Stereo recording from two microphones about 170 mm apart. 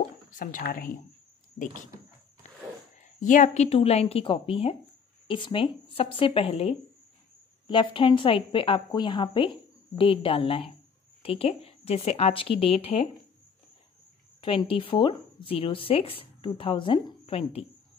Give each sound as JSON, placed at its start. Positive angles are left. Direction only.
{"t": 0.4, "sound": "speech", "side_deg": 50}
{"t": 1.6, "sound": "a woman's voice", "side_deg": 40}
{"t": 3.0, "sound": "a woman's voice", "side_deg": 50}
{"t": 14.4, "sound": "a woman's voice", "side_deg": 30}